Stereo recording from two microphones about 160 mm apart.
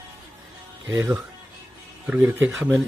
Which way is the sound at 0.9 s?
20° right (ahead or behind).